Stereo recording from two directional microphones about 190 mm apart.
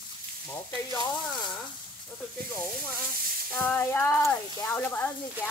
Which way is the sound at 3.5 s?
10° left (ahead or behind).